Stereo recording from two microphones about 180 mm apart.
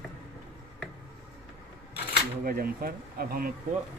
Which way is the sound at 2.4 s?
55° right (ahead or behind).